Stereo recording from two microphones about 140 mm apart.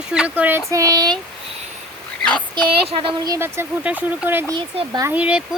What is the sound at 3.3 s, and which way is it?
Speech, 15° right (ahead or behind).